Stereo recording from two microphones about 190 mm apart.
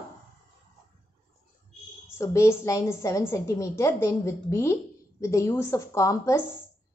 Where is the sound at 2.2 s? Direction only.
15° left (ahead or behind).